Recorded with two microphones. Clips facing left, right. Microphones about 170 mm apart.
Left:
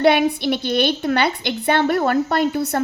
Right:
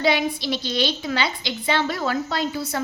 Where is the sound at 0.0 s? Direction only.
60° left (ahead or behind).